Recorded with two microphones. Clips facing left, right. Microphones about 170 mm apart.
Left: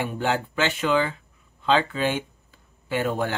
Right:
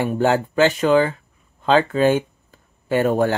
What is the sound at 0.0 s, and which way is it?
Speech, 40° right (ahead or behind).